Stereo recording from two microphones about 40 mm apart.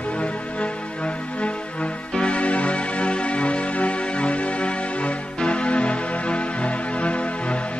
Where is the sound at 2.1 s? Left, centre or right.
Left.